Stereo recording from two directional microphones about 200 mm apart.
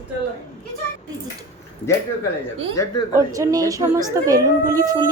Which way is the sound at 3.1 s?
15° right (ahead or behind).